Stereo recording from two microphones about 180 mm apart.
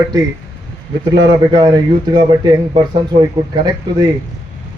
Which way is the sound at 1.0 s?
25° right (ahead or behind).